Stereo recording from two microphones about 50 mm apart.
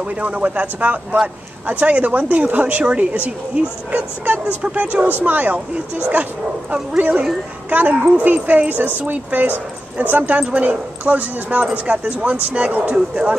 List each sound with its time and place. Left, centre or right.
0.0 s speech: right
7.0 s speech: right